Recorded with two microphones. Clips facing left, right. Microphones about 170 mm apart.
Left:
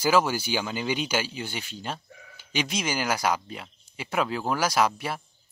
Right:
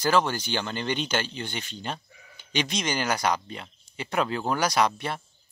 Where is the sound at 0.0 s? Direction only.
10° left (ahead or behind).